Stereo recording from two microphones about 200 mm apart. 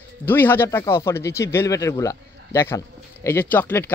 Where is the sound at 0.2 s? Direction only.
10° left (ahead or behind).